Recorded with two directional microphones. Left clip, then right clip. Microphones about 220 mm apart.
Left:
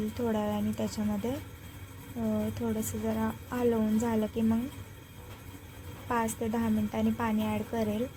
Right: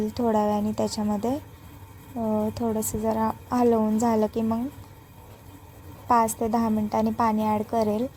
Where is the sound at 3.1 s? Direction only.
35° right (ahead or behind).